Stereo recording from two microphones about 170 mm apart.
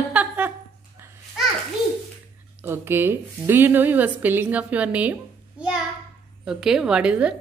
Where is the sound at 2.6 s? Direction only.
15° right (ahead or behind).